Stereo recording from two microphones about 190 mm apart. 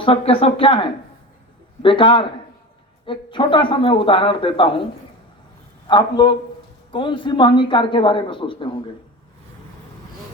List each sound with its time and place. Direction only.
0.0 s speech: 30° left (ahead or behind)
5.9 s speech: 25° left (ahead or behind)